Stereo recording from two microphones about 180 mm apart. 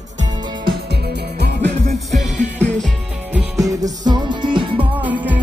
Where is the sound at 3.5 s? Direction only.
20° right (ahead or behind).